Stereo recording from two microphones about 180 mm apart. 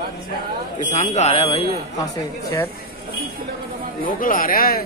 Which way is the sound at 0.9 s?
40° left (ahead or behind).